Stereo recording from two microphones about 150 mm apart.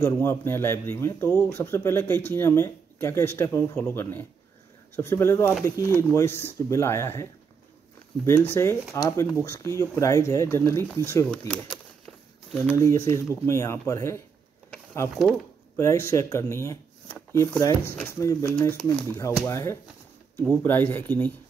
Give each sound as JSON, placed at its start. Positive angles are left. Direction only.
{"t": 0.0, "sound": "speech", "side_deg": 15}
{"t": 8.4, "sound": "speech", "side_deg": 15}
{"t": 11.3, "sound": "speech", "side_deg": 5}
{"t": 12.7, "sound": "speech", "side_deg": 15}
{"t": 15.7, "sound": "speech", "side_deg": 20}